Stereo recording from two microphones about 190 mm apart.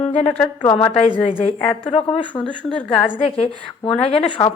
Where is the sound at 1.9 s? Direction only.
25° left (ahead or behind).